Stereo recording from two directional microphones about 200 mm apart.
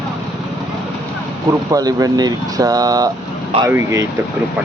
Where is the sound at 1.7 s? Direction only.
15° right (ahead or behind).